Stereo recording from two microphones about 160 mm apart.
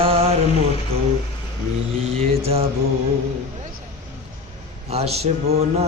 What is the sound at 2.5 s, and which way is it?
Music, 40° right (ahead or behind).